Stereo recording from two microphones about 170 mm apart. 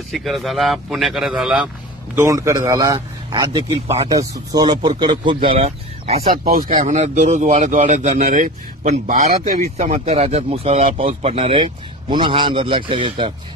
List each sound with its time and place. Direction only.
0.1 s a man's voice: centre (ahead or behind)
2.1 s a man's voice: 20° right (ahead or behind); by 6.2 s 35° right (ahead or behind)
6.3 s speech: 60° right (ahead or behind); by 13.3 s 30° right (ahead or behind)